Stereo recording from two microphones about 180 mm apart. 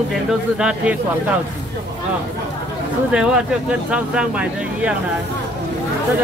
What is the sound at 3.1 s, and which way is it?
Speech, 5° right (ahead or behind).